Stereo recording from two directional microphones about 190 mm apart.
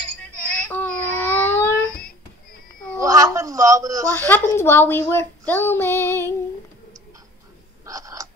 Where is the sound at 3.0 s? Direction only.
15° right (ahead or behind).